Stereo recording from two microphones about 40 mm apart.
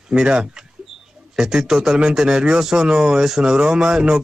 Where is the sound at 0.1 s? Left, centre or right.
Right.